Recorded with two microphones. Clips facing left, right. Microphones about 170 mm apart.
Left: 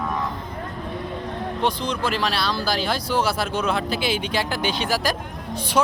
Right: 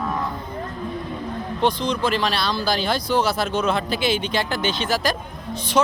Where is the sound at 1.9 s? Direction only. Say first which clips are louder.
Right 2 dB; 5° left (ahead or behind).